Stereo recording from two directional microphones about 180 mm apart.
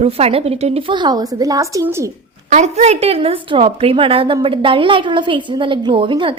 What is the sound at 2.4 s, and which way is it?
A woman's voice, 40° right (ahead or behind).